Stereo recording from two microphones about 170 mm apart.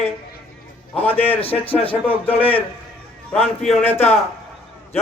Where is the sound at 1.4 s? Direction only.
35° left (ahead or behind).